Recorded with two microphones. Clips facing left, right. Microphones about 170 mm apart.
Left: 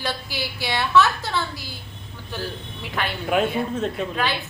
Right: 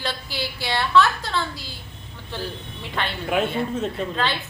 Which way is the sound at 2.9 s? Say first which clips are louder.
Left 1 dB; centre (ahead or behind).